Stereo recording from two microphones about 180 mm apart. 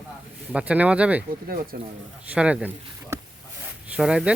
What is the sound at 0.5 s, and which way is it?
Speech, 10° right (ahead or behind).